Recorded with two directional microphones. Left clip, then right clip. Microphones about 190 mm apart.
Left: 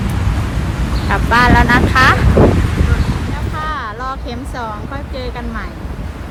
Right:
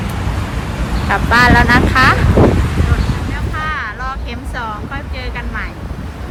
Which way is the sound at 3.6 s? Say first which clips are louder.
Right 1 dB; 15° left (ahead or behind).